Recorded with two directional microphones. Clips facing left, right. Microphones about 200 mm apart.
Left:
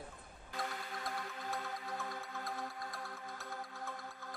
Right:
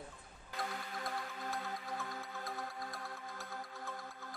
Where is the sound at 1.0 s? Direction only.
Centre (ahead or behind).